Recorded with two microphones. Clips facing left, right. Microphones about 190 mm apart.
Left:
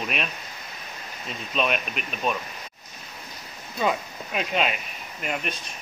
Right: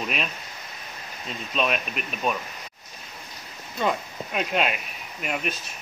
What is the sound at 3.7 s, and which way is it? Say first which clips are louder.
Speech: even; centre (ahead or behind).